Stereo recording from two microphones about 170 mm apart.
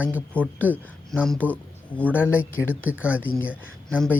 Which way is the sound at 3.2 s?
10° left (ahead or behind).